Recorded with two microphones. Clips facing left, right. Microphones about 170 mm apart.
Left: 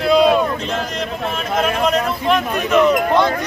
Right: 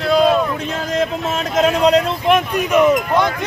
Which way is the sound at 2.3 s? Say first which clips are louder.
Right 2 dB; 15° right (ahead or behind).